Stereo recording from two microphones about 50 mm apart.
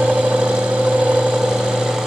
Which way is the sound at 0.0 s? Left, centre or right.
Right.